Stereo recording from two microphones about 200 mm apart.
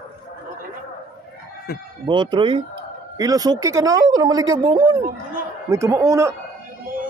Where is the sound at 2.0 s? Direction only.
25° right (ahead or behind).